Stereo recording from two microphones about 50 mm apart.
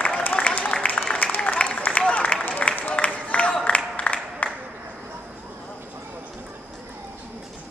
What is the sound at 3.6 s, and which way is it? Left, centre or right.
Music, left.